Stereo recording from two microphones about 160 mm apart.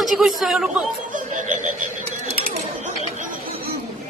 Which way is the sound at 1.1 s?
50° right (ahead or behind).